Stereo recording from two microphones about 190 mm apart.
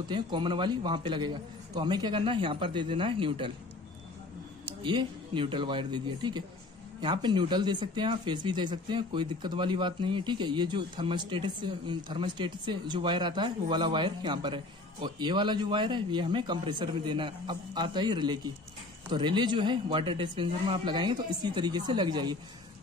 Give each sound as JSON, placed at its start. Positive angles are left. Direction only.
{"t": 0.1, "sound": "speech", "side_deg": -25}
{"t": 4.8, "sound": "speech", "side_deg": -25}